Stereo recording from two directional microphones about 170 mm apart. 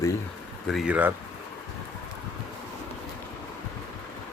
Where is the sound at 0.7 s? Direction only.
5° right (ahead or behind).